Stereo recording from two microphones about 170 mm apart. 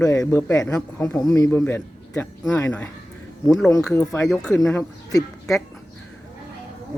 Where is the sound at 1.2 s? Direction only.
20° left (ahead or behind); by 4.7 s 5° left (ahead or behind).